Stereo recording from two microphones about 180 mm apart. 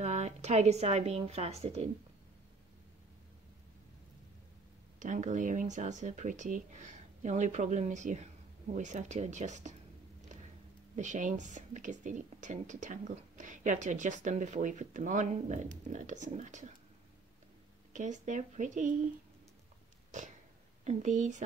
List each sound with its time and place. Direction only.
0.0 s speech: 40° right (ahead or behind)
4.9 s a woman's voice: 45° right (ahead or behind)
11.0 s a woman's voice: 45° right (ahead or behind)
17.9 s a woman's voice: 40° right (ahead or behind)
20.1 s a sound: 45° right (ahead or behind)
20.8 s speech: 40° right (ahead or behind)